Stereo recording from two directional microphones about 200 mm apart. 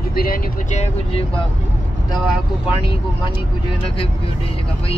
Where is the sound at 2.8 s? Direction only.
25° left (ahead or behind).